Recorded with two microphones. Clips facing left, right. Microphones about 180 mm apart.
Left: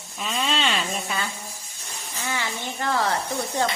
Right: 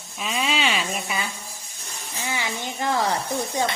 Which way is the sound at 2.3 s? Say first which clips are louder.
Even; 15° right (ahead or behind).